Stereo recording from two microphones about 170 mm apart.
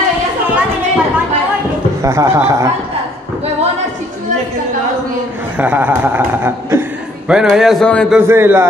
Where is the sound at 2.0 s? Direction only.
15° right (ahead or behind).